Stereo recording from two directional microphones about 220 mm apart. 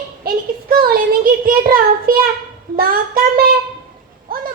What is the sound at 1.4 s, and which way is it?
Child singing, 40° right (ahead or behind).